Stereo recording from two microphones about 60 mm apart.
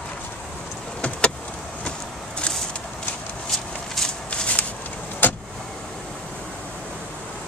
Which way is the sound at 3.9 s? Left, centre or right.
Centre.